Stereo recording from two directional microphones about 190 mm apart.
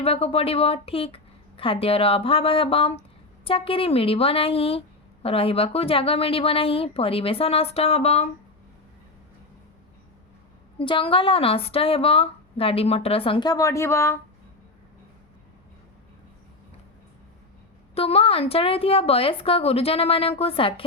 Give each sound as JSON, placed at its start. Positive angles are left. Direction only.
{"t": 0.0, "sound": "a woman's voice", "side_deg": 30}
{"t": 10.8, "sound": "speech", "side_deg": 25}
{"t": 17.9, "sound": "a woman's voice", "side_deg": 30}